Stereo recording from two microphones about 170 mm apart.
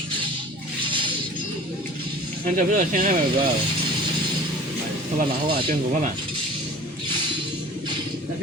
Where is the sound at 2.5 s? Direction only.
50° right (ahead or behind).